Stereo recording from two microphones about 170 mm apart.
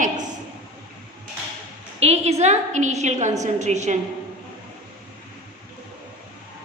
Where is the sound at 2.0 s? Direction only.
40° right (ahead or behind).